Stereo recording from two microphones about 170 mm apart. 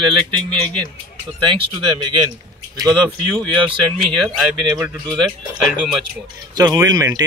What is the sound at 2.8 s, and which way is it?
Speech, 5° left (ahead or behind).